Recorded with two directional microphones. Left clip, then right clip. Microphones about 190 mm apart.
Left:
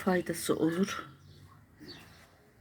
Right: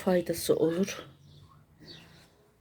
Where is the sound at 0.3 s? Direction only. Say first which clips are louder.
Right 4 dB; 15° right (ahead or behind).